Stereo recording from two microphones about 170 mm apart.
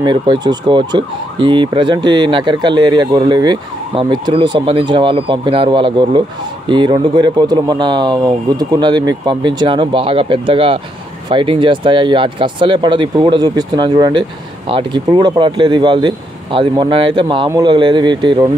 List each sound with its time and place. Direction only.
0.0 s ambulance: 25° right (ahead or behind)